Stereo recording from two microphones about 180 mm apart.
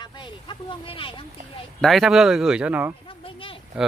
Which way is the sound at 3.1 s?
30° left (ahead or behind).